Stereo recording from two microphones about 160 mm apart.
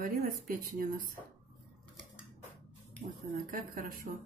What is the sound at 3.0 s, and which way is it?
Speech, 55° right (ahead or behind).